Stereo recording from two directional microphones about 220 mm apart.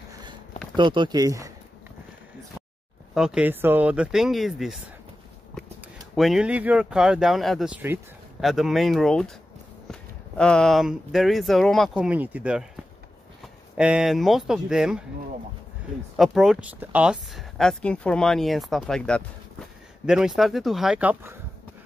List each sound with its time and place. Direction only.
0.7 s speech: 20° right (ahead or behind)
3.2 s speech: 5° right (ahead or behind)
6.1 s speech: centre (ahead or behind)
13.7 s speech: 5° right (ahead or behind)
16.2 s speech: centre (ahead or behind)